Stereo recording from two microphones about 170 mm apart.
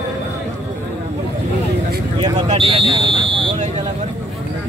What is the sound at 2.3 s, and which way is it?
Speech, 35° right (ahead or behind).